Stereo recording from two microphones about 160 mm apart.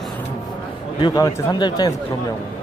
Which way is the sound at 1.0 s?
25° left (ahead or behind).